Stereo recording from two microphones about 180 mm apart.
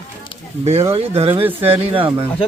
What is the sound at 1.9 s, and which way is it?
Speech, 30° right (ahead or behind).